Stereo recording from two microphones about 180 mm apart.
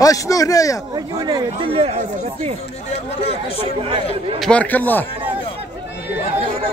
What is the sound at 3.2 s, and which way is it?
Speech, 35° left (ahead or behind).